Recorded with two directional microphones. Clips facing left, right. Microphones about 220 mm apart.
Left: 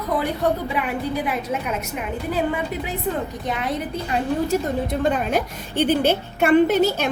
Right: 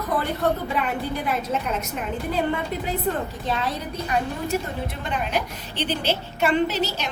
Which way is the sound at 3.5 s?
20° left (ahead or behind).